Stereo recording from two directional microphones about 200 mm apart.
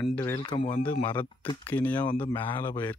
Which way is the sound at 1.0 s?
10° left (ahead or behind).